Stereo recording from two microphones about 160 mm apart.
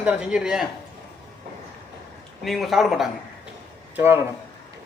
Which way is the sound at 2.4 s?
Centre (ahead or behind).